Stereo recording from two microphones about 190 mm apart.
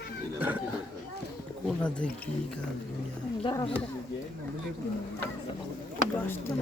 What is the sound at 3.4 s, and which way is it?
Speech, 20° left (ahead or behind).